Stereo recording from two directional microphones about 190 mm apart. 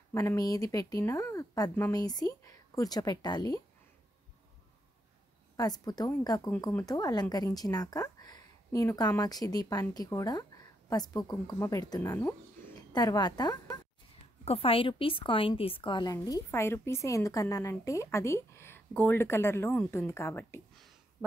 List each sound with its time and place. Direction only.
0.1 s a woman's voice: 15° left (ahead or behind)
5.6 s a woman's voice: 20° left (ahead or behind)